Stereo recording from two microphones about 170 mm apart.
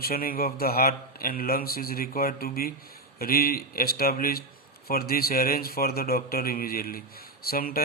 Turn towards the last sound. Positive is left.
turn(degrees=60)  # may be behind; listen again after turning